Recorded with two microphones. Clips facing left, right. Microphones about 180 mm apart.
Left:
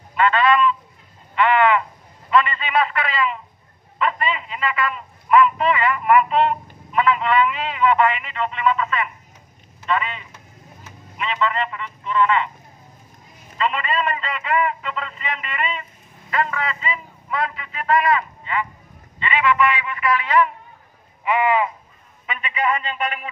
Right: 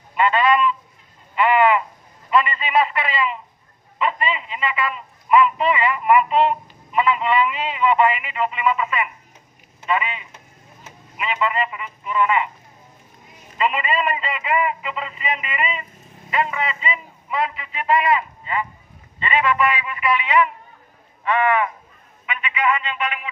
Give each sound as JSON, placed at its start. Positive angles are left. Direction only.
{"t": 0.1, "sound": "speech", "side_deg": -10}
{"t": 1.3, "sound": "a sound", "side_deg": -5}
{"t": 6.9, "sound": "speech", "side_deg": -5}
{"t": 13.6, "sound": "a man's voice", "side_deg": -10}
{"t": 19.6, "sound": "speech", "side_deg": -30}
{"t": 20.2, "sound": "a man's voice", "side_deg": -10}
{"t": 21.2, "sound": "speech", "side_deg": 15}
{"t": 22.2, "sound": "a man's voice", "side_deg": 35}